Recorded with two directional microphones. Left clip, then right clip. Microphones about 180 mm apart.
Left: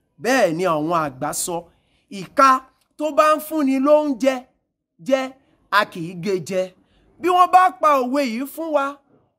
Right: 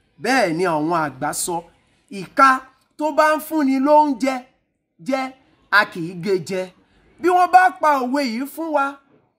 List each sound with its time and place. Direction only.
0.2 s a woman's voice: 35° left (ahead or behind)